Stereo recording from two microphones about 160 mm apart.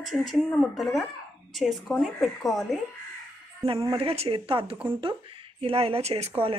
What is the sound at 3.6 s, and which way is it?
Speech, 35° right (ahead or behind).